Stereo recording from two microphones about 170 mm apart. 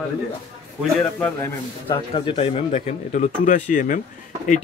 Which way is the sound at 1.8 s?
30° left (ahead or behind).